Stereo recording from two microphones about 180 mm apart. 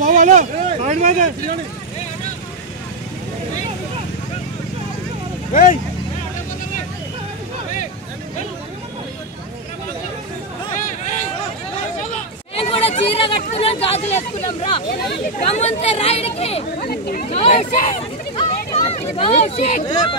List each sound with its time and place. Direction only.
0.0 s vehicle: 45° right (ahead or behind)
5.5 s speech: 45° left (ahead or behind)
12.5 s a sound: 35° left (ahead or behind)
13.4 s speech: 35° left (ahead or behind)
16.8 s speech: 60° left (ahead or behind)
17.3 s speech: 35° left (ahead or behind)
19.9 s speech: 25° left (ahead or behind)